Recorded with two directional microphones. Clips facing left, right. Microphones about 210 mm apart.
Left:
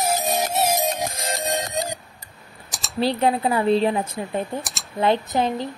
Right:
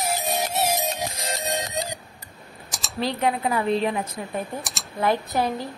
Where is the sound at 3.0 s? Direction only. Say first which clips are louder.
Left 4 dB; 30° left (ahead or behind).